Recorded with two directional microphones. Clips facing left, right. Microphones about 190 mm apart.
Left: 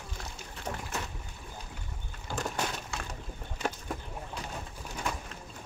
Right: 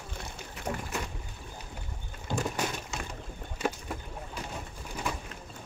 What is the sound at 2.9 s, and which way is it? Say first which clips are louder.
Boat: right 1 dB; 20° right (ahead or behind).